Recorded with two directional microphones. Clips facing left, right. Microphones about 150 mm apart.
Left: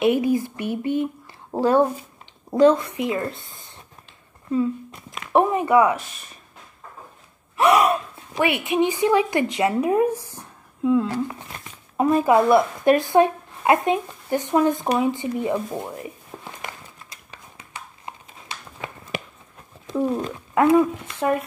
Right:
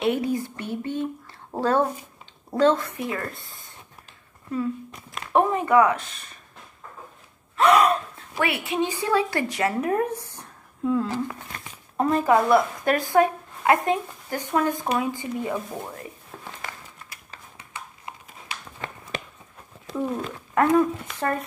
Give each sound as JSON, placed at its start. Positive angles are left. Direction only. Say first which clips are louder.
{"t": 0.0, "sound": "a woman's voice", "louder": "left 5 dB", "side_deg": 15}
{"t": 3.3, "sound": "speech", "louder": "left 1 dB", "side_deg": 0}
{"t": 5.3, "sound": "a woman's voice", "louder": "left 2 dB", "side_deg": 15}
{"t": 7.5, "sound": "a woman's voice", "louder": "left 1 dB", "side_deg": 20}
{"t": 14.9, "sound": "a sound", "louder": "left 4 dB", "side_deg": 25}
{"t": 18.8, "sound": "a sound", "louder": "left 1 dB", "side_deg": 5}
{"t": 20.2, "sound": "a woman's voice", "louder": "left 2 dB", "side_deg": 15}